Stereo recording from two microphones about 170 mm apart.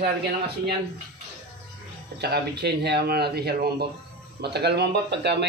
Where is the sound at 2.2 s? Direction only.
75° right (ahead or behind).